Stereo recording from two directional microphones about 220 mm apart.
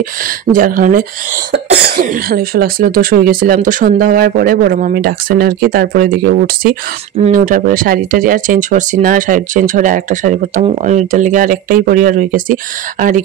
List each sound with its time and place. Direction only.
0.5 s speech: 40° right (ahead or behind)